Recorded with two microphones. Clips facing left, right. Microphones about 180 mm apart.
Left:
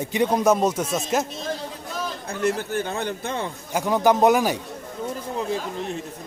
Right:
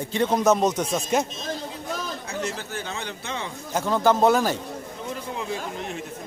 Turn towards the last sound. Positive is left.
turn(degrees=35)  # may be behind; listen again after turning